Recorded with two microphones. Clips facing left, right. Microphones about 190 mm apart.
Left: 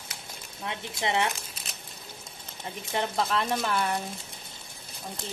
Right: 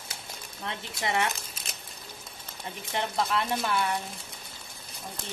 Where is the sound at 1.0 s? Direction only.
20° left (ahead or behind).